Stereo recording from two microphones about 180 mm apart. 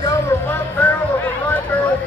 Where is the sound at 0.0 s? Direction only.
15° left (ahead or behind).